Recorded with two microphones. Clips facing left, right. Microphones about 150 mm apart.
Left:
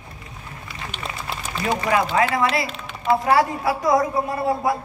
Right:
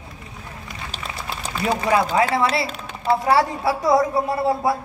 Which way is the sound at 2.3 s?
35° right (ahead or behind).